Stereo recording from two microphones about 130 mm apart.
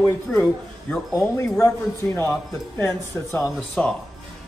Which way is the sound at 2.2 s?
20° left (ahead or behind).